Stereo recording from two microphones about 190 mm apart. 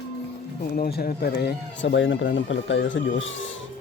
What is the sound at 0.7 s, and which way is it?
Speech, 55° left (ahead or behind).